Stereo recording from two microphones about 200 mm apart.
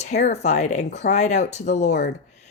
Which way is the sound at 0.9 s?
55° left (ahead or behind).